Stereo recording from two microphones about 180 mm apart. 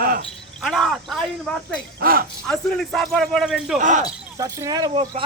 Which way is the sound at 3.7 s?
45° right (ahead or behind).